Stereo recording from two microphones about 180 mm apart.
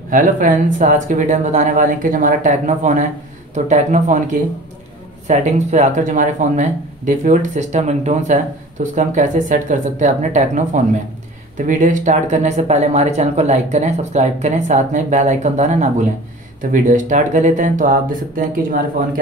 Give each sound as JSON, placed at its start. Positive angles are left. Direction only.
{"t": 0.1, "sound": "speech", "side_deg": -50}